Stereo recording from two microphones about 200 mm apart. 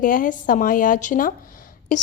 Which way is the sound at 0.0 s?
40° left (ahead or behind).